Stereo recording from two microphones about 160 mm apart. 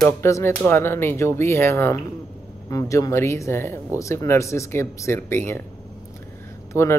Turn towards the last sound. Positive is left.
turn(degrees=15)  # may be behind; listen again after turning